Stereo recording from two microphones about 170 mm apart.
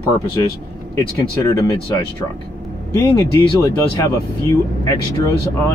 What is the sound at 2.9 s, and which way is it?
Speech, 20° left (ahead or behind).